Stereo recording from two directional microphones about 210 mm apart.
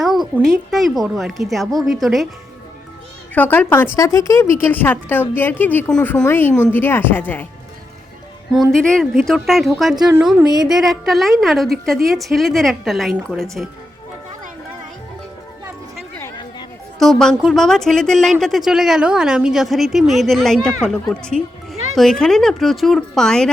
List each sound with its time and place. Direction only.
0.0 s speech: centre (ahead or behind)
3.3 s a woman's voice: 10° left (ahead or behind)
8.7 s speech: 5° left (ahead or behind); by 10.7 s 15° right (ahead or behind)
10.7 s speech: centre (ahead or behind)
17.0 s speech: centre (ahead or behind)